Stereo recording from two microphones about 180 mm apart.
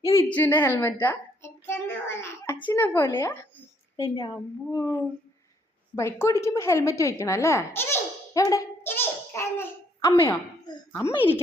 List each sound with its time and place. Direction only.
0.0 s a woman's voice: 15° left (ahead or behind)
3.9 s a woman's voice: 25° left (ahead or behind)
6.0 s a woman's voice: 15° left (ahead or behind)
6.4 s baby laughter: 15° left (ahead or behind)